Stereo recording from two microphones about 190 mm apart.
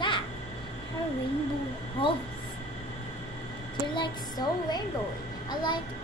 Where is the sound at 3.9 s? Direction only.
25° left (ahead or behind).